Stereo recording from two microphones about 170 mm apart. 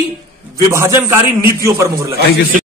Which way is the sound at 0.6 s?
15° right (ahead or behind).